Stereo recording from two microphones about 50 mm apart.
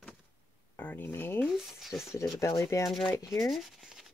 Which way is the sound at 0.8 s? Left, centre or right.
Left.